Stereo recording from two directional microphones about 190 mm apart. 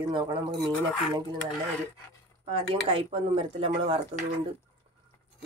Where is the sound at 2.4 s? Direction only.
30° right (ahead or behind).